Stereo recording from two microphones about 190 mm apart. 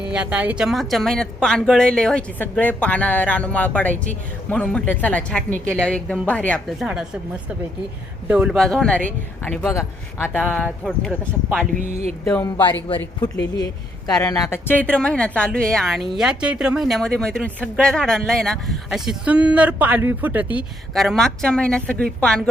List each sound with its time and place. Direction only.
0.1 s a woman's voice: 5° right (ahead or behind)
8.3 s a woman's voice: 5° right (ahead or behind)
11.8 s speech: 35° right (ahead or behind)
12.2 s speech: 10° left (ahead or behind)
14.1 s a woman's voice: 20° left (ahead or behind)